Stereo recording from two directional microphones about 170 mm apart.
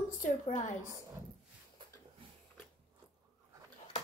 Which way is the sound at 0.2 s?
50° left (ahead or behind).